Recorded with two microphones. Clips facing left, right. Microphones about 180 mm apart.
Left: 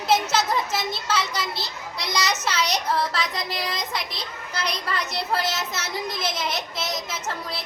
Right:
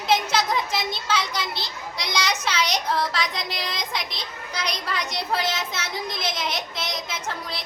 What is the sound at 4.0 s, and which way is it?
Child singing, 30° left (ahead or behind).